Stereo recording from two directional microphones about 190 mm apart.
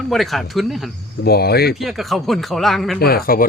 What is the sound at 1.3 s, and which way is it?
Speech, 55° left (ahead or behind).